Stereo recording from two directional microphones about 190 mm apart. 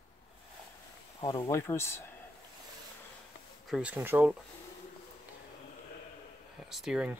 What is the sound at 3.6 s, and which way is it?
Speech, 5° right (ahead or behind).